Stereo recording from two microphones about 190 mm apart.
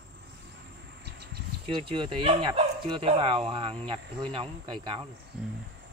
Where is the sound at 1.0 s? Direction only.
60° right (ahead or behind).